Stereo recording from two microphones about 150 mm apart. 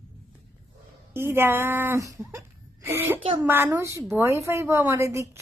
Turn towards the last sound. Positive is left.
turn(degrees=-20)  # may be behind; listen again after turning